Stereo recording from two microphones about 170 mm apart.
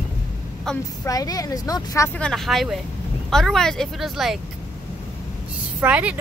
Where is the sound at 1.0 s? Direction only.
20° left (ahead or behind).